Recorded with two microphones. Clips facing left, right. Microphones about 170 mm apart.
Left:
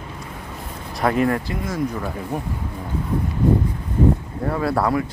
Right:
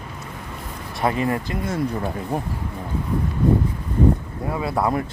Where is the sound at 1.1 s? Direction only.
20° right (ahead or behind).